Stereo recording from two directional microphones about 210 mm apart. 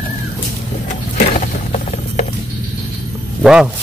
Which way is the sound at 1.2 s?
35° left (ahead or behind).